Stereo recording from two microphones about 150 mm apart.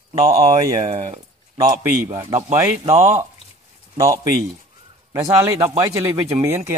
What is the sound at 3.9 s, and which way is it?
A man's voice, 20° right (ahead or behind).